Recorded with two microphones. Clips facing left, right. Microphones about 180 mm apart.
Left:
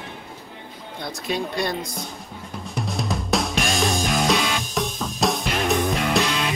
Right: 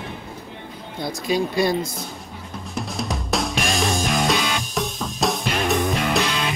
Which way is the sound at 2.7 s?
Centre (ahead or behind).